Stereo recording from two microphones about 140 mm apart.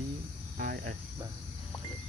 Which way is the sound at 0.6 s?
80° right.